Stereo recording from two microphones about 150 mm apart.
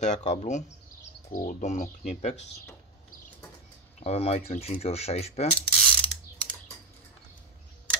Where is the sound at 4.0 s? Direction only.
45° left (ahead or behind).